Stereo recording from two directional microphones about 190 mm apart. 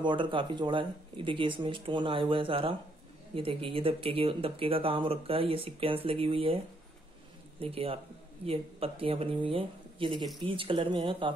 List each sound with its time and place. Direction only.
0.0 s speech: 25° right (ahead or behind)
7.6 s speech: 30° right (ahead or behind)